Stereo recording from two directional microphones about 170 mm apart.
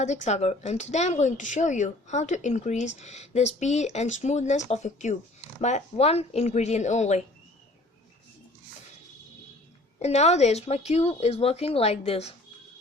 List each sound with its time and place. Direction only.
0.0 s speech: 45° left (ahead or behind)
10.0 s speech: 40° left (ahead or behind)